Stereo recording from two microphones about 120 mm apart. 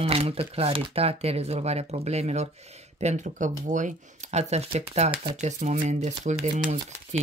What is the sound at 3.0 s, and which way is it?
Speech, 80° right.